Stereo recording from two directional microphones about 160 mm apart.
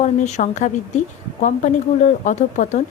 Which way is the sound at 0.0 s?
45° left (ahead or behind).